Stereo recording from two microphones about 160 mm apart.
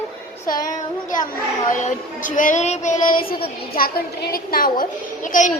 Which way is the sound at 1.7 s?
50° left (ahead or behind).